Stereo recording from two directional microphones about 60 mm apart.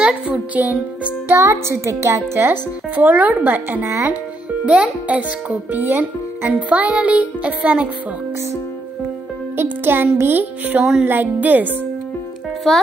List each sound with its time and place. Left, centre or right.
0.0 s a child's voice: right
1.3 s a woman's voice: right
2.3 s music: right
3.0 s a child's voice: right
3.8 s a woman's voice: right
4.6 s a child's voice: right
9.6 s music: right
11.1 s a child's voice: right
12.7 s speech: centre